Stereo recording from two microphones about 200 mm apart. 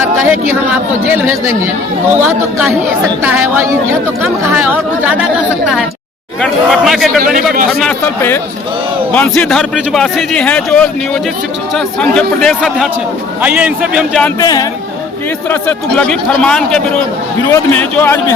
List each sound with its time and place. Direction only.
0.0 s speech: 10° right (ahead or behind)
6.4 s a man's voice: centre (ahead or behind)
14.3 s speech: 20° left (ahead or behind)
15.4 s a man's voice: 5° left (ahead or behind)